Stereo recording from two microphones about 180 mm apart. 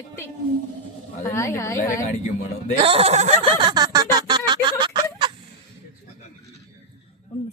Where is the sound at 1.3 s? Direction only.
15° left (ahead or behind).